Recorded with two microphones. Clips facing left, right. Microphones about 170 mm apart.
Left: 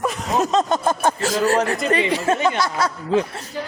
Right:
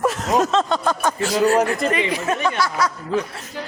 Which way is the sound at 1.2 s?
40° left (ahead or behind).